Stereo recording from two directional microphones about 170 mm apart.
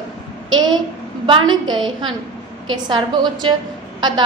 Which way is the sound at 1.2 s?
25° right (ahead or behind).